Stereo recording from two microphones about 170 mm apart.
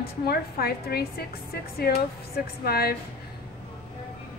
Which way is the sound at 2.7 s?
65° left (ahead or behind).